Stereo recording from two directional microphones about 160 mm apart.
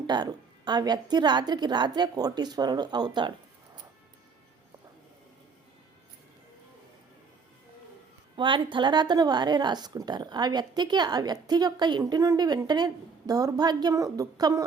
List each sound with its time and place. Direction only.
0.1 s a woman's voice: 25° right (ahead or behind)
8.4 s a woman's voice: 30° right (ahead or behind)